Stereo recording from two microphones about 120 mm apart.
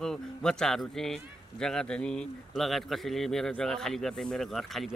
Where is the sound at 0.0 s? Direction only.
5° left (ahead or behind).